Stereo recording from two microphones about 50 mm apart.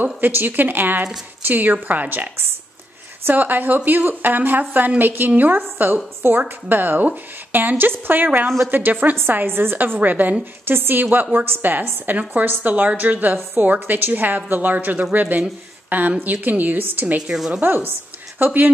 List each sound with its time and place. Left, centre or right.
0.0 s a woman's voice: right
9.9 s a woman's voice: right
10.7 s a woman's voice: right